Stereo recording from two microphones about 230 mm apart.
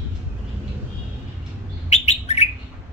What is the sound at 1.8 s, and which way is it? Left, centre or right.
Bird, left.